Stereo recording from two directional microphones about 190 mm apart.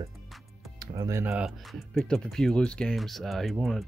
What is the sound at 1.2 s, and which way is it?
Speech, 5° right (ahead or behind).